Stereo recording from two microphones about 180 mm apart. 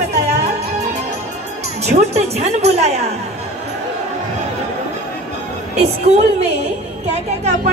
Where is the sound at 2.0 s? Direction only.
35° right (ahead or behind).